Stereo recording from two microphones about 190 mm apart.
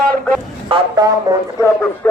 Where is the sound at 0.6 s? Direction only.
25° right (ahead or behind).